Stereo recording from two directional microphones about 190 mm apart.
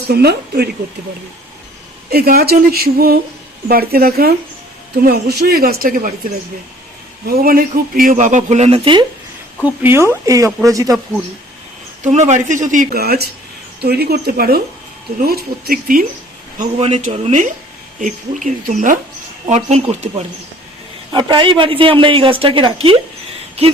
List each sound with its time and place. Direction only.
0.1 s speech: 55° right (ahead or behind)
2.0 s speech: 55° right (ahead or behind)
7.3 s a man's voice: 50° right (ahead or behind); by 9.0 s 25° right (ahead or behind)
9.6 s speech: 10° right (ahead or behind)
12.0 s a man's voice: 40° right (ahead or behind)
16.7 s a man's voice: 35° right (ahead or behind)
21.1 s a man's voice: 25° right (ahead or behind)